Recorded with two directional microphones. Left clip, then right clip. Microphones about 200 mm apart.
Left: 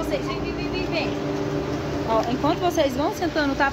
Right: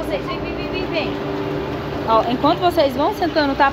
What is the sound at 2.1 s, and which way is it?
Speech, 20° right (ahead or behind).